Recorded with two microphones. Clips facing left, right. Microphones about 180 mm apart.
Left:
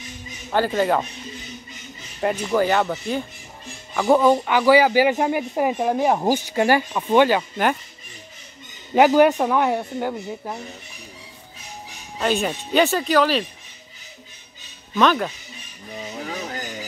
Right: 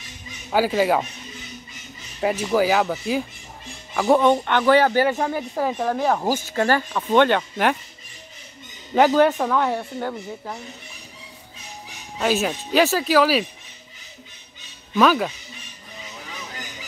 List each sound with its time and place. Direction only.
0.5 s speech: 5° right (ahead or behind)
2.1 s speech: 5° right (ahead or behind)
8.9 s speech: 10° left (ahead or behind)
12.2 s speech: 5° right (ahead or behind)
15.0 s speech: 5° right (ahead or behind)
16.0 s a sound: 45° left (ahead or behind)